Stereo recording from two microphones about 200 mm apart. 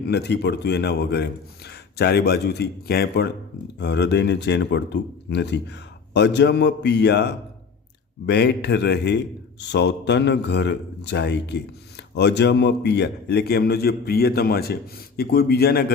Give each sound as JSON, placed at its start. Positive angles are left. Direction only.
{"t": 0.1, "sound": "a man's voice", "side_deg": 60}